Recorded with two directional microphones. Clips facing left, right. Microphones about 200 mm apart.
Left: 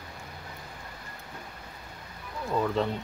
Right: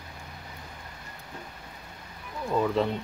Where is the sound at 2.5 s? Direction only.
Centre (ahead or behind).